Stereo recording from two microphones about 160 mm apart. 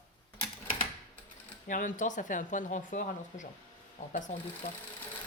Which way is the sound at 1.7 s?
55° left (ahead or behind).